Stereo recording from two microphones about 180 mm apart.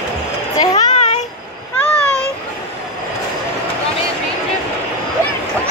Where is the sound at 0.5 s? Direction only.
20° left (ahead or behind).